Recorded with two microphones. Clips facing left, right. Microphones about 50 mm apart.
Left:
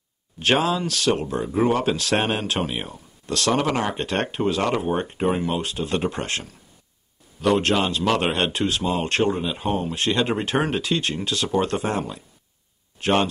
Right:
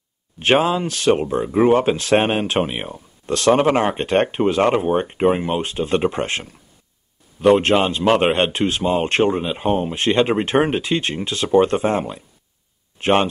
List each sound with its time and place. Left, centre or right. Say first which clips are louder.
0.4 s speech: right 4 dB; right